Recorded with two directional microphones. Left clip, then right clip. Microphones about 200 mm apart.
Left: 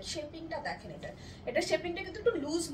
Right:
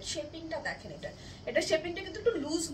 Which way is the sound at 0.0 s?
15° right (ahead or behind).